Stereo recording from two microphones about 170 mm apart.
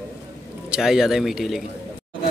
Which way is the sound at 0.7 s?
5° right (ahead or behind).